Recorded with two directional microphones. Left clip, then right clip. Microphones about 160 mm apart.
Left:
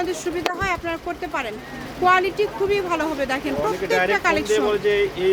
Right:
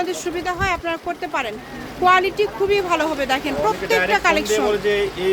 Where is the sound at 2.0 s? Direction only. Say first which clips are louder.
Right 2 dB; 15° right (ahead or behind).